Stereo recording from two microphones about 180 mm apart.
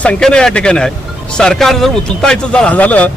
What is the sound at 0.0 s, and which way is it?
Speech, 5° left (ahead or behind).